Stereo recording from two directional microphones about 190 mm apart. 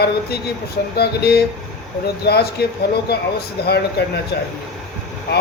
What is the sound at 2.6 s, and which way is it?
Speech, 55° left (ahead or behind).